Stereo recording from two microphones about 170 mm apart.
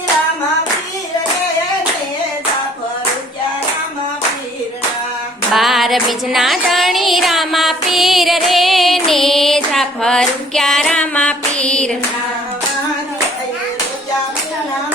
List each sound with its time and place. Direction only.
5.5 s music: centre (ahead or behind)
9.0 s female singing: centre (ahead or behind)